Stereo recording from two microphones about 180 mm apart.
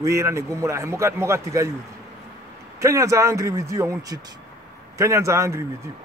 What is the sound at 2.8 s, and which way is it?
A man's voice, 15° right (ahead or behind).